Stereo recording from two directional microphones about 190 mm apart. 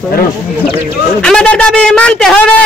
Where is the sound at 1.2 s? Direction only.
5° left (ahead or behind).